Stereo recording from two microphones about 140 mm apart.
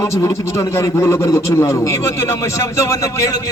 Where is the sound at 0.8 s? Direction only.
20° left (ahead or behind).